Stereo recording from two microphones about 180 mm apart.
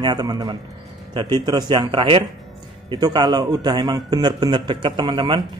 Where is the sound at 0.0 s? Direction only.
20° right (ahead or behind).